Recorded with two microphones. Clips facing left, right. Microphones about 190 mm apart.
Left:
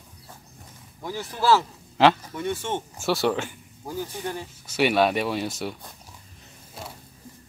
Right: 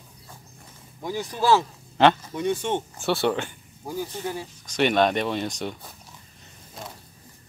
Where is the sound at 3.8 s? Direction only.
10° right (ahead or behind).